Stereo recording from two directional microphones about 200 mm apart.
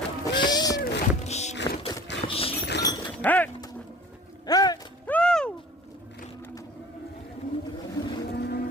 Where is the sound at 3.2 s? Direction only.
10° left (ahead or behind).